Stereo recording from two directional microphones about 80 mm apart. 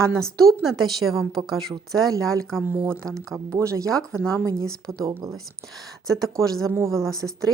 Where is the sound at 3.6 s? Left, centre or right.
Right.